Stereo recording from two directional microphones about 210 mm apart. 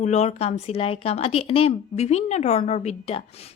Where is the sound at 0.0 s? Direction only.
30° left (ahead or behind).